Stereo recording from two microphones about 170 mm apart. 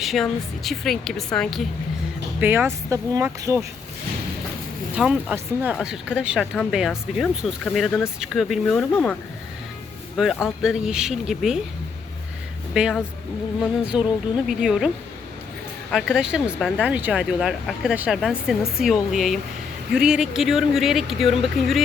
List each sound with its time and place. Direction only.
0.0 s speech: centre (ahead or behind)
2.4 s speech: 10° right (ahead or behind)
4.9 s speech: 5° right (ahead or behind)
10.2 s speech: centre (ahead or behind)
12.7 s speech: 5° right (ahead or behind)
15.9 s speech: centre (ahead or behind)